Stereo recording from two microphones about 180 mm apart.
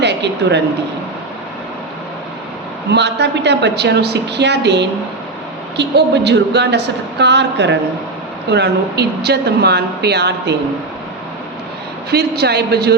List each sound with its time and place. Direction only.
0.0 s a woman's voice: 70° right (ahead or behind)
2.9 s speech: 70° right (ahead or behind)
12.1 s a man's voice: 65° right (ahead or behind)